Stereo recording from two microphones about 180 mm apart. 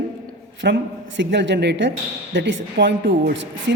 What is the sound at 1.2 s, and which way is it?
A woman's voice, 80° right.